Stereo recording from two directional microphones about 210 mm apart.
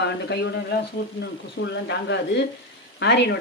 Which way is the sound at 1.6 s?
60° left (ahead or behind).